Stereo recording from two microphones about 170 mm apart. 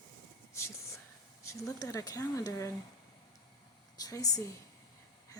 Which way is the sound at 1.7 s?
20° left (ahead or behind).